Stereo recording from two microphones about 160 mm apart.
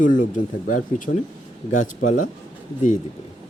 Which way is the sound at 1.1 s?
90° left.